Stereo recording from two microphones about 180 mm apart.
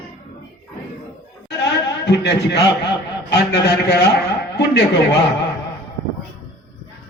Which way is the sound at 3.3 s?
70° left (ahead or behind).